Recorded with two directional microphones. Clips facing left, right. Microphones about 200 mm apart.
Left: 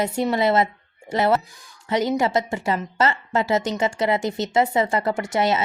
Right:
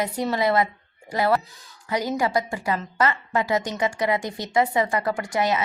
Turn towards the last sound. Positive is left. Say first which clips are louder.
# left 2 dB
turn(degrees=25)  # may be behind; listen again after turning